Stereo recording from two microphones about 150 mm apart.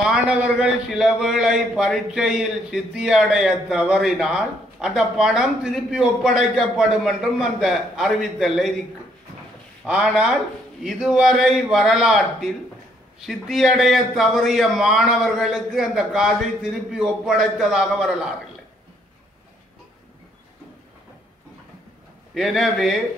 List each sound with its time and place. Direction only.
0.0 s a man's voice: 5° right (ahead or behind)
9.8 s a man's voice: 5° right (ahead or behind)
22.3 s a man's voice: centre (ahead or behind)